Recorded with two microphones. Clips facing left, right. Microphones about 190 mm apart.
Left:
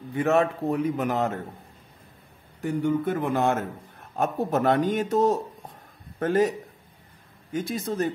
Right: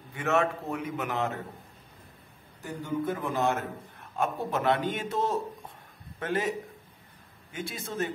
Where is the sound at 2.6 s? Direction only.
65° left (ahead or behind).